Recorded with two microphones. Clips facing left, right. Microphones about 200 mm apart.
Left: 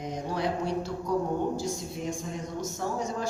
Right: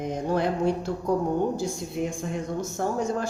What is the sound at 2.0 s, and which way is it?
Speech, 60° right (ahead or behind).